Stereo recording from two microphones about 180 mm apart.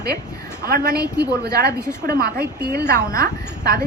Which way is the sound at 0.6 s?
55° right (ahead or behind).